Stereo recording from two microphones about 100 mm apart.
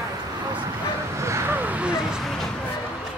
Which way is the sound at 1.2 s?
30° right (ahead or behind).